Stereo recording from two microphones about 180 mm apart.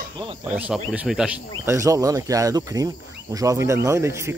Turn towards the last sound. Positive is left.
turn(degrees=-15)  # may be behind; listen again after turning